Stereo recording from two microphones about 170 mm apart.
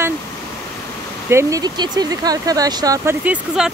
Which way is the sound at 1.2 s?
15° right (ahead or behind).